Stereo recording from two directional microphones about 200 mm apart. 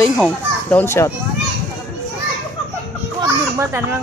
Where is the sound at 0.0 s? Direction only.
10° left (ahead or behind).